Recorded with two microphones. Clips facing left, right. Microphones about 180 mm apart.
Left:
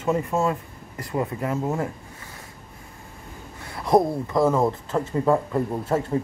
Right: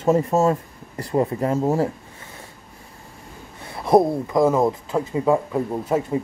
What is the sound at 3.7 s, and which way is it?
Speech, 20° right (ahead or behind).